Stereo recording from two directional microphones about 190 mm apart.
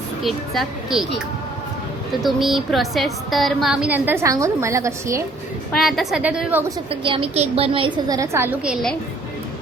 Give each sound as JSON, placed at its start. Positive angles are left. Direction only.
{"t": 0.2, "sound": "a woman's voice", "side_deg": 0}
{"t": 2.2, "sound": "a woman's voice", "side_deg": 0}
{"t": 5.7, "sound": "a woman's voice", "side_deg": 0}
{"t": 6.9, "sound": "a woman's voice", "side_deg": -30}